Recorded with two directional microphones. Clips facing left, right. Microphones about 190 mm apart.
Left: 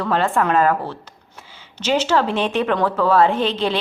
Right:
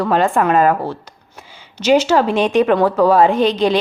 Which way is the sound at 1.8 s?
10° right (ahead or behind).